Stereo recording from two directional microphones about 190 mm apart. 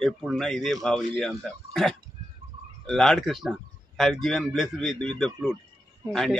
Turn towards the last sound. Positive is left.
turn(degrees=0)  # may be behind; listen again after turning